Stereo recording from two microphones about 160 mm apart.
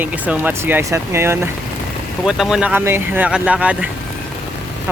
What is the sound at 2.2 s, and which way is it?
Speech, 5° right (ahead or behind).